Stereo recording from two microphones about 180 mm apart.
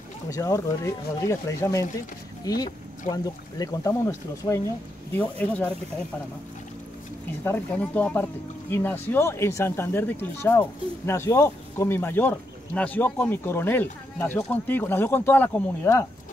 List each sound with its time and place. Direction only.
0.3 s speech: 15° left (ahead or behind)
7.4 s speech: 10° left (ahead or behind)